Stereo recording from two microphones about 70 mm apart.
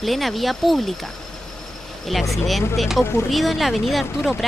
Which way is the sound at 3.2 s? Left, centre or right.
Centre.